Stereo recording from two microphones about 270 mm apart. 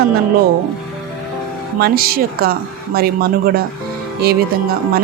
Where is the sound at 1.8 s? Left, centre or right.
Right.